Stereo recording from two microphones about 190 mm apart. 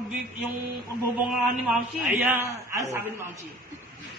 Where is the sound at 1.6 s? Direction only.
5° right (ahead or behind).